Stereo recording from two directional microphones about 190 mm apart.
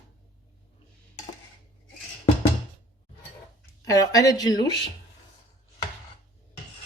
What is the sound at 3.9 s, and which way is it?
Speech, 20° left (ahead or behind).